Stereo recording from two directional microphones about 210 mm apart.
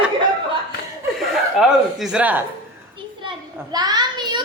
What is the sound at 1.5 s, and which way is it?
Speech, centre (ahead or behind).